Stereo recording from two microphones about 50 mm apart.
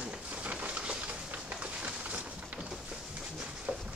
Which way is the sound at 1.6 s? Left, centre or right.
Right.